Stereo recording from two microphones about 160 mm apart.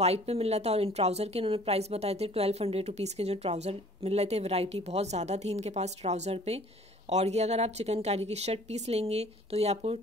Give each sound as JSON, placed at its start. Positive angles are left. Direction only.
{"t": 0.0, "sound": "speech", "side_deg": -40}